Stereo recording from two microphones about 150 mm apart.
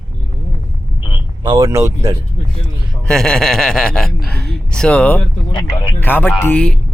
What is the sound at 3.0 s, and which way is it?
Speech, 5° left (ahead or behind).